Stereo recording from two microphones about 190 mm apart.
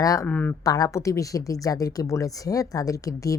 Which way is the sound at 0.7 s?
20° left (ahead or behind).